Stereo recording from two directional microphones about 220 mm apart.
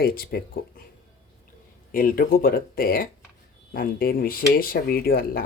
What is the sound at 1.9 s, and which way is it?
Speech, 40° left (ahead or behind).